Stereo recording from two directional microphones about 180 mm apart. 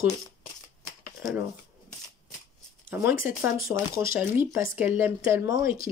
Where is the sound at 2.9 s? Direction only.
15° right (ahead or behind).